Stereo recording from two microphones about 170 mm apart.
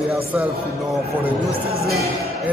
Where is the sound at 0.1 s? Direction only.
10° right (ahead or behind).